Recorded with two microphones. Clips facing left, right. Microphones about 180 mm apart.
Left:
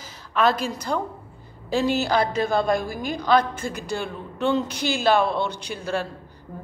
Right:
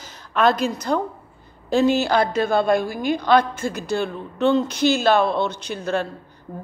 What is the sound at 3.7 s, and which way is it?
Speech, 10° left (ahead or behind).